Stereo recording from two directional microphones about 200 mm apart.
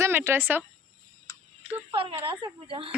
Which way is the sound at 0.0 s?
10° right (ahead or behind).